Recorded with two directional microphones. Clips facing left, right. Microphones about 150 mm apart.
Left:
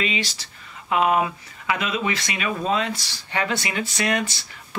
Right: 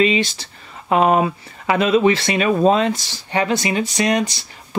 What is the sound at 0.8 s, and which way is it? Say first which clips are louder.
Speech: right 5 dB; 40° right (ahead or behind).